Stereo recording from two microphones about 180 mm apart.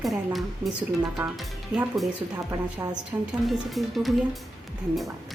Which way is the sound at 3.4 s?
Centre (ahead or behind).